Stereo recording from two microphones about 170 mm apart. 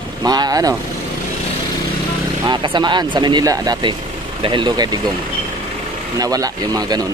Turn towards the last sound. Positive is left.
turn(degrees=-20)  # may be behind; listen again after turning